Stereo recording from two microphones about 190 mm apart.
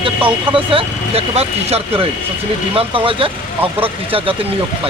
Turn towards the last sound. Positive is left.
turn(degrees=-30)  # may be behind; listen again after turning